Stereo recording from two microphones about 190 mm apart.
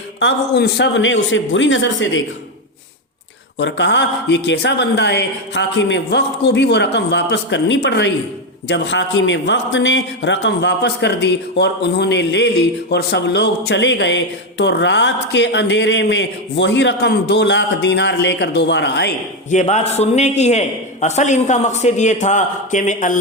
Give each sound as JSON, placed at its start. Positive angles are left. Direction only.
{"t": 0.2, "sound": "a man's voice", "side_deg": 65}
{"t": 3.6, "sound": "a man's voice", "side_deg": 65}
{"t": 19.5, "sound": "a man's voice", "side_deg": 40}